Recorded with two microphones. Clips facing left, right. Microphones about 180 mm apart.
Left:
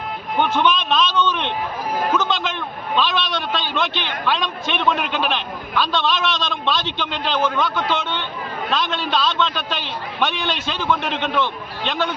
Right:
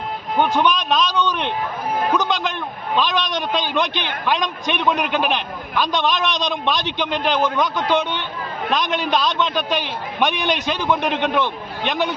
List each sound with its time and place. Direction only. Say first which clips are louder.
0.3 s a man's voice: right 1 dB; 10° right (ahead or behind)